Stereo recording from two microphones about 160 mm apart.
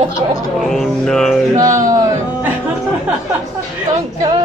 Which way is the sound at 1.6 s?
20° right (ahead or behind).